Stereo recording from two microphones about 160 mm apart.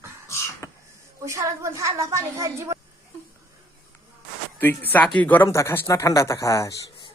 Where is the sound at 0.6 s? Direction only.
20° left (ahead or behind).